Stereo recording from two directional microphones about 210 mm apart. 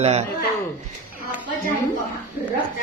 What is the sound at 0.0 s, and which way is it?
Speech, 30° right (ahead or behind).